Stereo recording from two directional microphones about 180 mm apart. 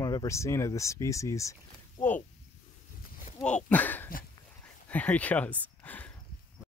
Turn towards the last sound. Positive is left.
turn(degrees=10)  # may be behind; listen again after turning